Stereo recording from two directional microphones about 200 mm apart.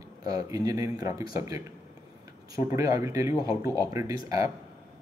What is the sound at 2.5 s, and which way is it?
Speech, 15° right (ahead or behind).